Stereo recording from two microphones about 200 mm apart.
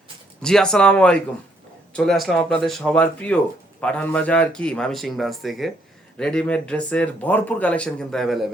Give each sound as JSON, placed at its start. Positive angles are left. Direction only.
{"t": 0.4, "sound": "speech", "side_deg": 5}